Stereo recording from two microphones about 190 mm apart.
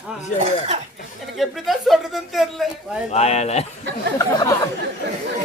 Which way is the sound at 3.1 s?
35° left (ahead or behind).